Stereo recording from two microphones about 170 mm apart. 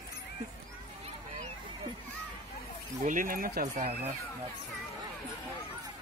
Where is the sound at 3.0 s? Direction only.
55° right (ahead or behind).